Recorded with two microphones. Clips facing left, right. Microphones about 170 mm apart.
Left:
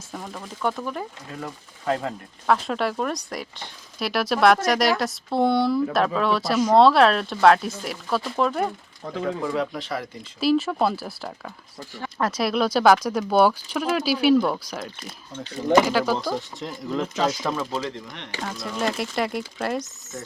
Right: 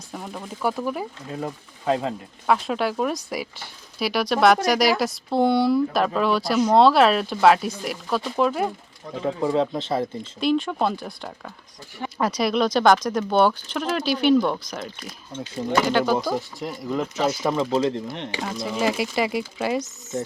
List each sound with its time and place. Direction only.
0.1 s speech: 5° right (ahead or behind)
1.3 s speech: 20° right (ahead or behind)
2.5 s speech: centre (ahead or behind)
9.4 s speech: 25° right (ahead or behind)
10.4 s speech: 5° left (ahead or behind)
17.4 s speech: 20° right (ahead or behind)
17.8 s speech: 30° right (ahead or behind)
18.7 s speech: 5° right (ahead or behind)